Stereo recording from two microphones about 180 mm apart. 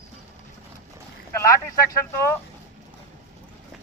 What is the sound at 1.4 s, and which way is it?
Speech, 15° left (ahead or behind).